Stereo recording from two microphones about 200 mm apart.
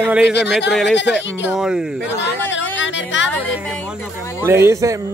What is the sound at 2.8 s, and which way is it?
Speech, 65° left (ahead or behind).